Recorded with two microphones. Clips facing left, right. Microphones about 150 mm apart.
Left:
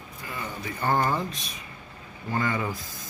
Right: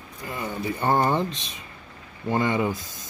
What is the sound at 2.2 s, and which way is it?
Speech, 20° right (ahead or behind).